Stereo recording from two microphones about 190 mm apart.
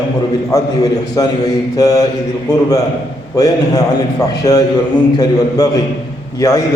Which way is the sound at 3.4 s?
20° left (ahead or behind).